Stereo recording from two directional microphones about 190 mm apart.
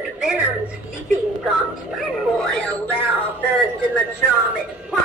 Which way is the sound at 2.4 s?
5° left (ahead or behind).